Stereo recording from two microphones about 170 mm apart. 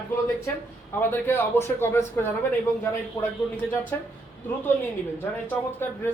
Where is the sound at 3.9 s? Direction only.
10° left (ahead or behind).